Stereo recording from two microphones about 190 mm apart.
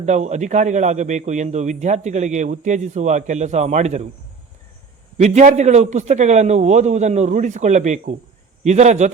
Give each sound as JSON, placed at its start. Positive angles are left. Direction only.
{"t": 0.0, "sound": "a man's voice", "side_deg": -35}
{"t": 5.1, "sound": "a man's voice", "side_deg": -40}